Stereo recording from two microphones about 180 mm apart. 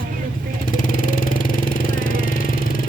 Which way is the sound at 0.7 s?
50° left (ahead or behind).